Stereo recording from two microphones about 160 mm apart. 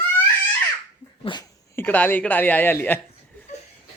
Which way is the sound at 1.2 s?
30° left (ahead or behind).